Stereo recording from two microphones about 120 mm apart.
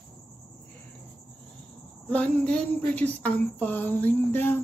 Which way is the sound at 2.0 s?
10° left (ahead or behind).